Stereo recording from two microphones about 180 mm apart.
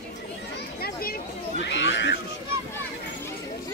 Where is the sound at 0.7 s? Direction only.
60° left (ahead or behind).